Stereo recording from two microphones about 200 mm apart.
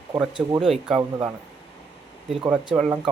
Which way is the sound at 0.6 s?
5° right (ahead or behind).